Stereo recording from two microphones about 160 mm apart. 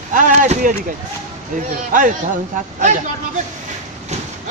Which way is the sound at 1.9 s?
55° right (ahead or behind).